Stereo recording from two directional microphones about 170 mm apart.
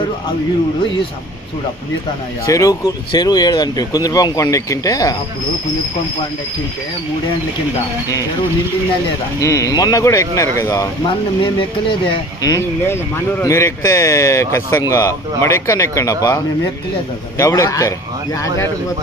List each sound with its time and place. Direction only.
2.5 s speech: 20° left (ahead or behind)
9.4 s speech: 20° left (ahead or behind)